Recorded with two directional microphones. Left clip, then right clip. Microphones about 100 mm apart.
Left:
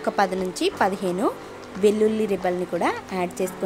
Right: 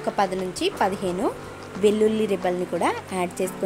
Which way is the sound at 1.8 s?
10° left (ahead or behind).